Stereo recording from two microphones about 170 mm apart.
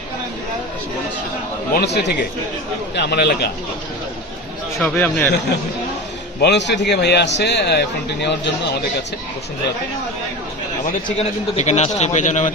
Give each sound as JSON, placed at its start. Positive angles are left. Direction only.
{"t": 1.7, "sound": "a man's voice", "side_deg": 75}
{"t": 4.8, "sound": "speech", "side_deg": 10}
{"t": 6.4, "sound": "a man's voice", "side_deg": 90}
{"t": 11.2, "sound": "a man's voice", "side_deg": 40}